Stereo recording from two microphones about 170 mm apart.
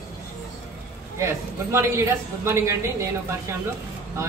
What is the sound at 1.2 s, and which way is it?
A man's voice, 15° right (ahead or behind).